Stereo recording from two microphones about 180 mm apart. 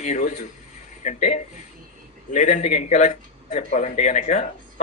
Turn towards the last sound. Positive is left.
turn(degrees=40)  # may be behind; listen again after turning